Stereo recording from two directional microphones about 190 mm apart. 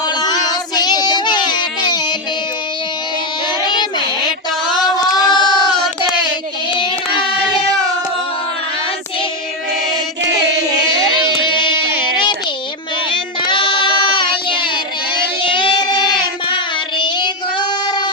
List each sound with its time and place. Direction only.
0.2 s child singing: 20° left (ahead or behind)
3.6 s child singing: 25° left (ahead or behind)
4.8 s a sound: 20° left (ahead or behind)
11.4 s music: 25° left (ahead or behind)
13.4 s music: 25° left (ahead or behind)
14.2 s child singing: 25° left (ahead or behind)
17.0 s child singing: 25° left (ahead or behind)